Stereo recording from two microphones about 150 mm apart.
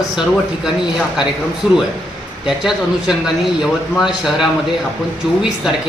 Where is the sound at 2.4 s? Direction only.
5° right (ahead or behind).